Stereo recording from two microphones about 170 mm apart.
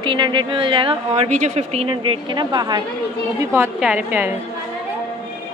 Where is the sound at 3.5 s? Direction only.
10° right (ahead or behind).